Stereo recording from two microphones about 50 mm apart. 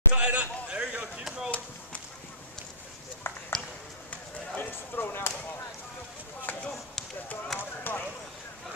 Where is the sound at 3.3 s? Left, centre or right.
Left.